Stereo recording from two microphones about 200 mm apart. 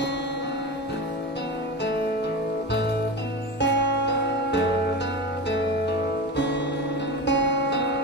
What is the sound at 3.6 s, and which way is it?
Music, 60° left (ahead or behind).